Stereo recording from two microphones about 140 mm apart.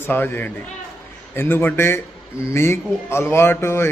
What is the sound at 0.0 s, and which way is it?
A man's voice, 15° left (ahead or behind).